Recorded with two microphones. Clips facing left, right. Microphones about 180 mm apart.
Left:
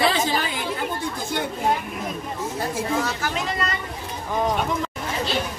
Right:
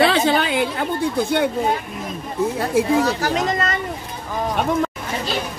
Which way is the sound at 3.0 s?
40° right (ahead or behind).